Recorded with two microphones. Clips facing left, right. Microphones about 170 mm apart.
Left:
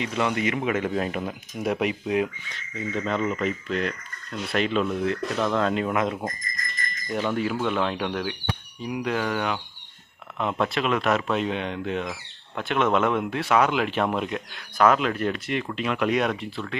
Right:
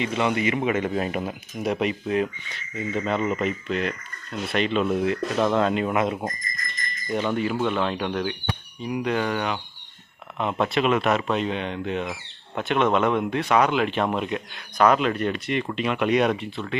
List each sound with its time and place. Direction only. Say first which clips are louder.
0.0 s speech: right 2 dB; centre (ahead or behind)
2.5 s speech: right 2 dB; 5° right (ahead or behind)
4.9 s speech: right 2 dB; 10° right (ahead or behind)